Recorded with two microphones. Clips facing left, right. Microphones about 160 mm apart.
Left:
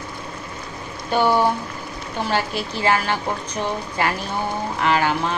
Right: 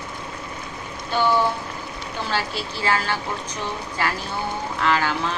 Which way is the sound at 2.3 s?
15° left (ahead or behind).